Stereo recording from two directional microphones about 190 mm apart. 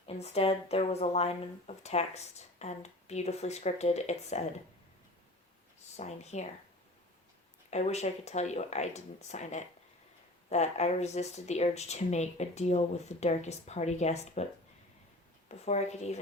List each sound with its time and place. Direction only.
0.1 s speech: 35° left (ahead or behind)
6.0 s speech: 35° left (ahead or behind)
7.7 s speech: 35° left (ahead or behind)
15.4 s speech: 35° left (ahead or behind)